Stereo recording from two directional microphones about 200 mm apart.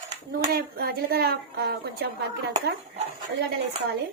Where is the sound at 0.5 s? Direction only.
50° right (ahead or behind).